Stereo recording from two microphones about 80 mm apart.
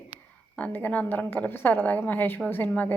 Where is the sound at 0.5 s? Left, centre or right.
Centre.